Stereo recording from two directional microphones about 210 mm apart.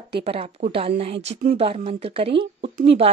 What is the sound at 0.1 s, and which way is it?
A woman's voice, 30° right (ahead or behind).